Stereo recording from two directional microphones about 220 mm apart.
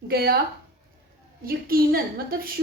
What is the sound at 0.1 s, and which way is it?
Speech, 45° right (ahead or behind).